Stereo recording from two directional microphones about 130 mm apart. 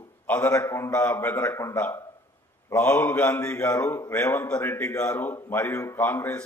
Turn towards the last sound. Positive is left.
turn(degrees=15)  # may be behind; listen again after turning